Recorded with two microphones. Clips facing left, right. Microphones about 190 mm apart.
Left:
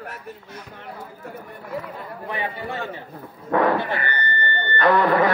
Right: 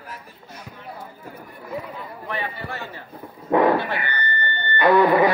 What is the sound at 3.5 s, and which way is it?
Speech, 15° right (ahead or behind).